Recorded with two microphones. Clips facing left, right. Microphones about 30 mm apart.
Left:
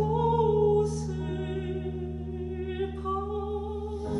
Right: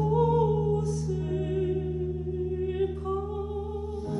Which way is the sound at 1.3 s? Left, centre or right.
Left.